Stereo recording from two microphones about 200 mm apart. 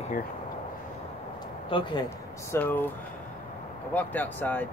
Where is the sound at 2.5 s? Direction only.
10° left (ahead or behind).